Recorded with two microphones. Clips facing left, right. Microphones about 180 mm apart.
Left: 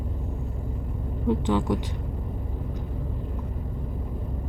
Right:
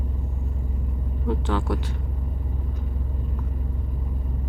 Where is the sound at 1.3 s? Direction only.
15° left (ahead or behind).